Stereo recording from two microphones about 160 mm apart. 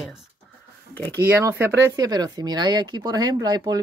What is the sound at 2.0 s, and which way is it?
Speech, 25° right (ahead or behind).